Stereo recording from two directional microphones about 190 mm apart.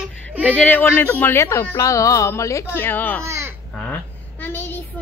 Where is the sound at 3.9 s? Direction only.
10° left (ahead or behind).